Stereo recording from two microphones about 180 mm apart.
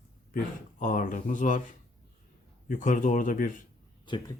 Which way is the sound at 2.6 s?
45° left (ahead or behind).